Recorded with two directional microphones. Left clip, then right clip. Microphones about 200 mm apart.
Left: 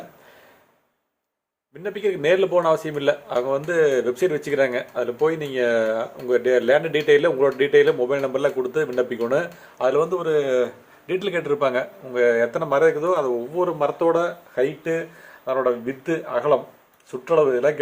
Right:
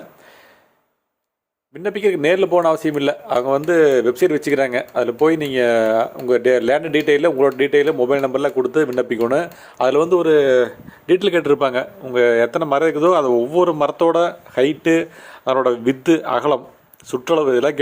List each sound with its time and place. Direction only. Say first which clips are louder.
1.8 s speech: right 5 dB; 40° right (ahead or behind)